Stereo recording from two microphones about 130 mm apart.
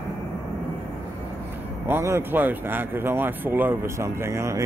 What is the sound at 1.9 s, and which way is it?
Speech, 20° right (ahead or behind).